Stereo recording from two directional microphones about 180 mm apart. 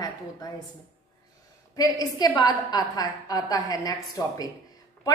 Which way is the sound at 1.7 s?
20° left (ahead or behind).